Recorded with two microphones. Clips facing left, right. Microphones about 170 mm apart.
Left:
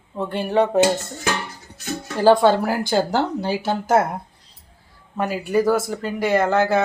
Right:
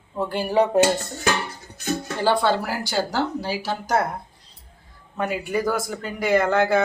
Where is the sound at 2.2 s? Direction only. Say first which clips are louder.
Left 7 dB; 45° left (ahead or behind).